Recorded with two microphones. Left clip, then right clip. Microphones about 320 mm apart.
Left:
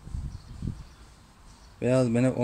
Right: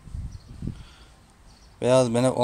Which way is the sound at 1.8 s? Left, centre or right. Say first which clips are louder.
Right 5 dB; right.